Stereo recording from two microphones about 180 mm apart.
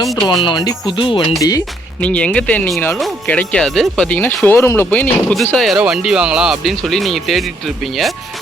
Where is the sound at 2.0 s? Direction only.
5° left (ahead or behind).